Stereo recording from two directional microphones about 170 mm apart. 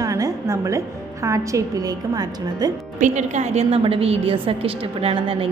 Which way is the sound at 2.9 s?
45° right (ahead or behind).